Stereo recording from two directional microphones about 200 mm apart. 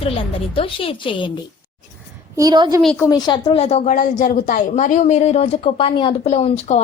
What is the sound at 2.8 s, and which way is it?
Speech, 5° left (ahead or behind).